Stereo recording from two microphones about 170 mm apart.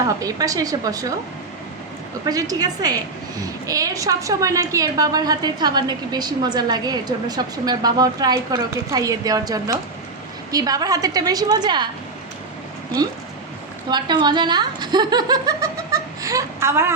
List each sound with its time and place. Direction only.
0.0 s a woman's voice: 20° right (ahead or behind)
2.2 s a woman's voice: 20° right (ahead or behind)
13.9 s a woman's voice: 25° right (ahead or behind)